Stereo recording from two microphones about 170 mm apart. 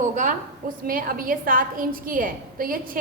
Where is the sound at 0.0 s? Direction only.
45° right (ahead or behind).